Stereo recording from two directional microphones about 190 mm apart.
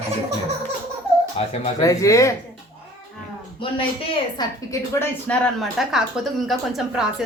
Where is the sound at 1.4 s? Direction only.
30° left (ahead or behind).